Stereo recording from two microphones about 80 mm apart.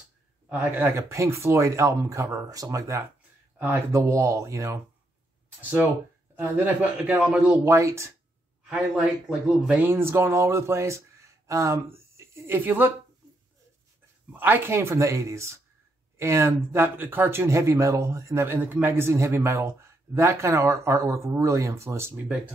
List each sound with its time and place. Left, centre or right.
0.5 s speech: right
5.6 s a man's voice: right
7.6 s speech: right
9.7 s speech: right
14.3 s speech: right